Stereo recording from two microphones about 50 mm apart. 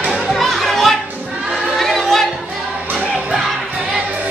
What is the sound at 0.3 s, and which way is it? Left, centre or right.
Children playing, centre.